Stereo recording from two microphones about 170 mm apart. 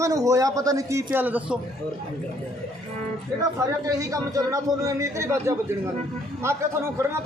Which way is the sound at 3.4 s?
20° right (ahead or behind).